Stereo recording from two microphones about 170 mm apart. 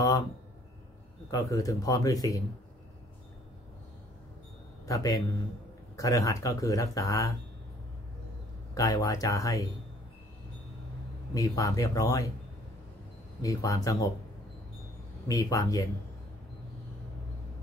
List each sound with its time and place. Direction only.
1.3 s speech: 20° left (ahead or behind)
4.8 s a man's voice: 20° left (ahead or behind)
8.7 s speech: 20° left (ahead or behind)
11.3 s speech: 20° left (ahead or behind)
13.4 s speech: 20° left (ahead or behind)
15.2 s speech: 20° left (ahead or behind)